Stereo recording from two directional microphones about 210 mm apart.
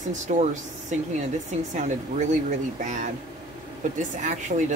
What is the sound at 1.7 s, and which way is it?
Speech, 35° right (ahead or behind).